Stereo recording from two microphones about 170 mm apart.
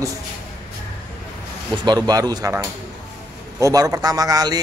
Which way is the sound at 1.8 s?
25° right (ahead or behind).